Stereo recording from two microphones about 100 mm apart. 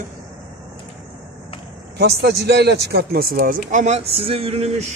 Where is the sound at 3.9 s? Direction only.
75° right (ahead or behind).